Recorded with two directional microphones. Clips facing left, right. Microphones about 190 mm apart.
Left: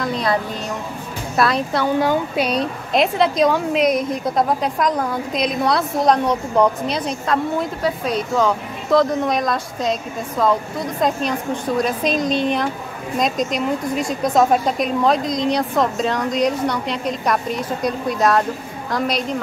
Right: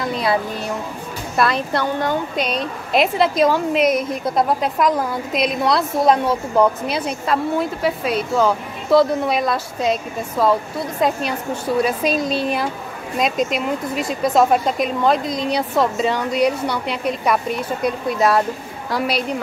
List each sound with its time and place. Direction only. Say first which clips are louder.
0.0 s a woman's voice: even; 5° right (ahead or behind)